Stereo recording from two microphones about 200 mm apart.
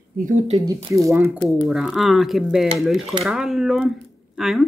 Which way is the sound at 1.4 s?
Centre (ahead or behind).